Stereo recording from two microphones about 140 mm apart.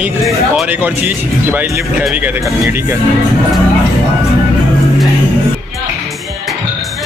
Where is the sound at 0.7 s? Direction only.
15° right (ahead or behind).